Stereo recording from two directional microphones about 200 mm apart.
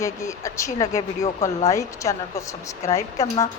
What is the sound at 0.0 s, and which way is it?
Speech, 15° left (ahead or behind).